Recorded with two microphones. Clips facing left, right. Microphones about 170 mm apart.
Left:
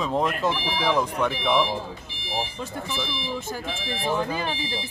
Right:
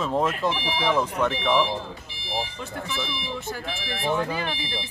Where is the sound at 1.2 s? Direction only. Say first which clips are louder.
Even; 10° left (ahead or behind).